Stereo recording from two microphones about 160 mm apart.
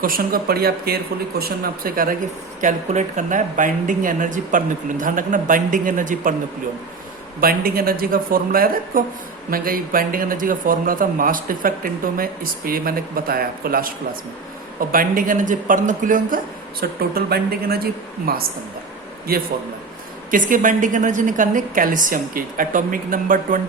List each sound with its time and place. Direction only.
0.0 s speech: 65° right (ahead or behind)
2.6 s speech: 50° right (ahead or behind)
7.4 s speech: 65° right (ahead or behind)
14.9 s speech: 60° right (ahead or behind)
16.8 s speech: 70° right (ahead or behind)
20.3 s speech: 55° right (ahead or behind)